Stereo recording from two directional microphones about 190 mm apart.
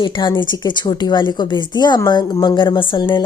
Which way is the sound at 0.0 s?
25° left (ahead or behind).